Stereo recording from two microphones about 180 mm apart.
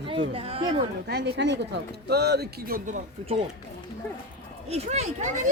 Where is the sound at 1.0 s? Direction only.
65° right (ahead or behind).